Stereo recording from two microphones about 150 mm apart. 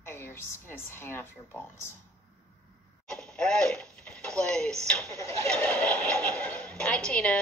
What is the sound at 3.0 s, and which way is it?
Speech, 5° left (ahead or behind).